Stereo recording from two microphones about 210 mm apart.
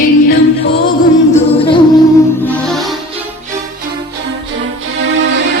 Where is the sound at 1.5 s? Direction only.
25° left (ahead or behind).